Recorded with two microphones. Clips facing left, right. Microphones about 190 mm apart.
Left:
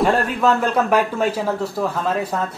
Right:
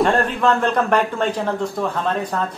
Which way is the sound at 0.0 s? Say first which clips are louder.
Even; 5° left (ahead or behind).